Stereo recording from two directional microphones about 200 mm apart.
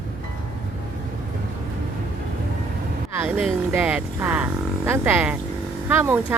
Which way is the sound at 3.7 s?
10° right (ahead or behind).